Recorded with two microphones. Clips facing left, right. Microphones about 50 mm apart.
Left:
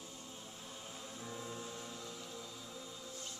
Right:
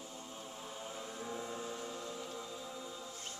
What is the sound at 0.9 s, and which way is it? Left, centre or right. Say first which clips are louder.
Music: right 4 dB; right.